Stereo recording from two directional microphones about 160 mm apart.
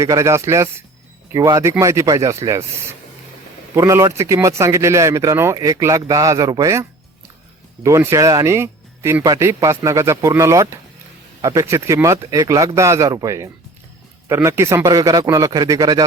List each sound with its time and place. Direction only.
0.0 s speech: 20° right (ahead or behind)
3.8 s speech: 15° right (ahead or behind)
7.9 s speech: 20° right (ahead or behind)